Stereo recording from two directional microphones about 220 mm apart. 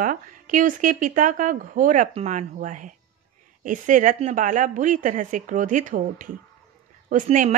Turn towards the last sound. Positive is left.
turn(degrees=-35)  # may be behind; listen again after turning